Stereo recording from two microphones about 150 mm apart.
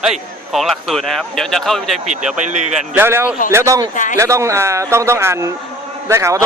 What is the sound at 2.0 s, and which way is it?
Speech, 50° right (ahead or behind).